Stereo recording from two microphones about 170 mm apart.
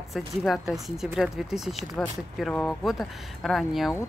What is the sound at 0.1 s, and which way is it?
Speech, centre (ahead or behind).